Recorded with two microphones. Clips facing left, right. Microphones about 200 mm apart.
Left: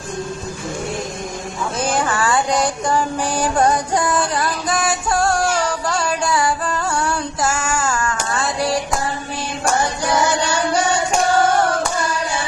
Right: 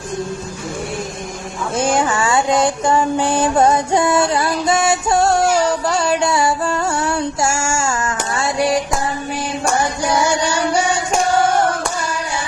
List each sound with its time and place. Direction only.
2.1 s music: 25° right (ahead or behind)